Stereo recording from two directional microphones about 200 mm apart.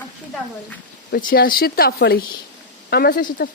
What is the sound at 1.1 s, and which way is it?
Speech, 45° left (ahead or behind).